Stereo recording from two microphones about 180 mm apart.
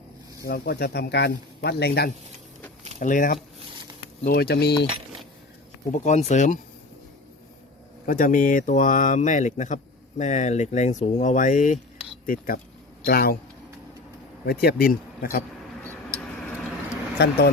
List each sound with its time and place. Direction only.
0.4 s speech: 65° left (ahead or behind)
3.0 s speech: 45° left (ahead or behind)
4.2 s speech: 60° left (ahead or behind)
5.9 s speech: 40° left (ahead or behind)
8.0 s speech: 50° left (ahead or behind)
14.4 s speech: 60° left (ahead or behind)
15.8 s vehicle: 10° left (ahead or behind)
17.2 s speech: 70° left (ahead or behind)